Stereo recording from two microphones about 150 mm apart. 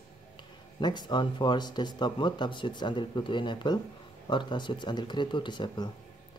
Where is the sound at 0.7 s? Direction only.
30° left (ahead or behind).